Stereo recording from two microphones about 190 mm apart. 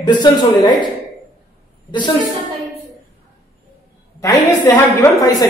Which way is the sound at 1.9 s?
25° left (ahead or behind).